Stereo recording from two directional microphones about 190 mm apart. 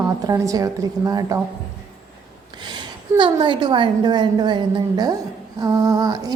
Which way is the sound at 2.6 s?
25° right (ahead or behind).